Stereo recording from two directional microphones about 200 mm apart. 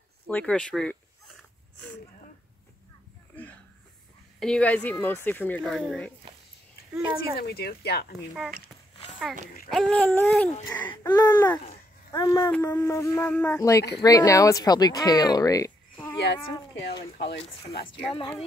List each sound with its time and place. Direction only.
0.3 s a sound: 5° left (ahead or behind)
4.4 s speech: 5° left (ahead or behind)
7.3 s speech: 50° left (ahead or behind)
8.9 s a sound: 30° left (ahead or behind)
9.7 s speech: centre (ahead or behind)
17.2 s speech: 55° left (ahead or behind)